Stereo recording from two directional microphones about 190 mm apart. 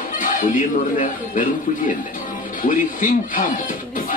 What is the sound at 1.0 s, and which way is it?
Speech, 45° left (ahead or behind).